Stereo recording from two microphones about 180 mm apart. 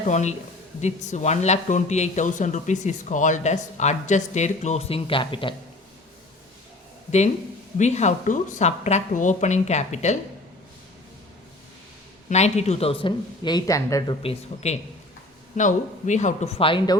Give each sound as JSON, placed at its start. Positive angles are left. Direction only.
{"t": 0.1, "sound": "speech", "side_deg": 40}
{"t": 7.8, "sound": "speech", "side_deg": 40}
{"t": 12.3, "sound": "speech", "side_deg": 40}
{"t": 14.2, "sound": "speech", "side_deg": 35}